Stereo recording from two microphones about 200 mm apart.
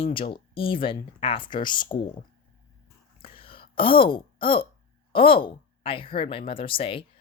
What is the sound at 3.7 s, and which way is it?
A woman's voice, 25° left (ahead or behind).